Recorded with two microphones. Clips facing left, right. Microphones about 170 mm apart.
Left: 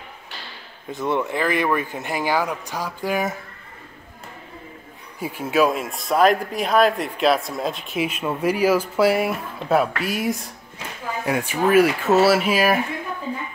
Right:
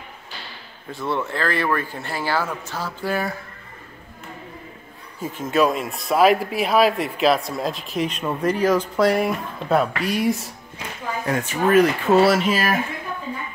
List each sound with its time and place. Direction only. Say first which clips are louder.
0.9 s speech: left 2 dB; 15° left (ahead or behind)
5.2 s speech: even; 10° left (ahead or behind)